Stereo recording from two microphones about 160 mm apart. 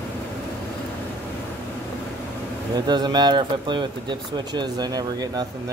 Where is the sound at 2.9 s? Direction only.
25° right (ahead or behind).